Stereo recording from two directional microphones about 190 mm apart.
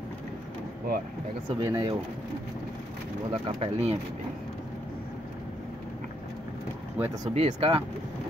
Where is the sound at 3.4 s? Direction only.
30° right (ahead or behind).